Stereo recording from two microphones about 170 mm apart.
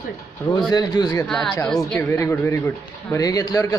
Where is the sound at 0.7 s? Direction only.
25° left (ahead or behind).